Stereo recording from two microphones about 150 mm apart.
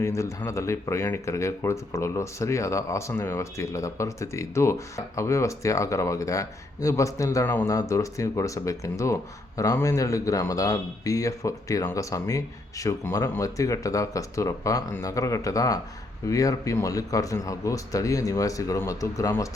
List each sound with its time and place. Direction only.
0.0 s speech: 20° left (ahead or behind)